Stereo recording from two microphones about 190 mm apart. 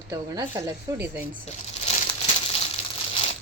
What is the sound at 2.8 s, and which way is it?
Crumpling, 35° left (ahead or behind).